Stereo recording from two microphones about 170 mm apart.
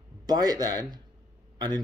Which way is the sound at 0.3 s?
25° right (ahead or behind).